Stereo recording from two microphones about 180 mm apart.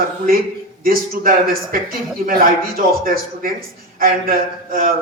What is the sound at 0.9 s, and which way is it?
A man's voice, 55° right (ahead or behind).